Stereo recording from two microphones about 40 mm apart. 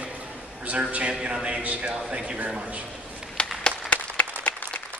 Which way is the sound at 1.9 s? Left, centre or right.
Right.